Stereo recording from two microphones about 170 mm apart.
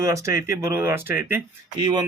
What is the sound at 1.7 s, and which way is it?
Speech, 25° right (ahead or behind).